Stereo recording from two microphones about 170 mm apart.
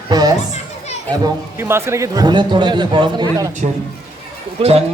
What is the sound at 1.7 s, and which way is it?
A man's voice, 15° right (ahead or behind).